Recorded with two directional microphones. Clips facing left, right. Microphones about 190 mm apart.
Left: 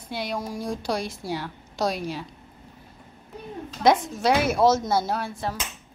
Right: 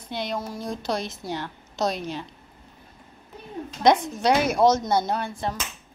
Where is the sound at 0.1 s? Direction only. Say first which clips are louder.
Even; 10° left (ahead or behind).